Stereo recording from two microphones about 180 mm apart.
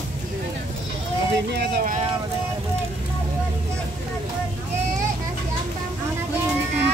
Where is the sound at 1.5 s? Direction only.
60° right (ahead or behind).